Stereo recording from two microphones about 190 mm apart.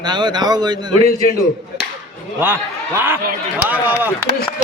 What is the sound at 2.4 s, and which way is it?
Speech, 10° right (ahead or behind).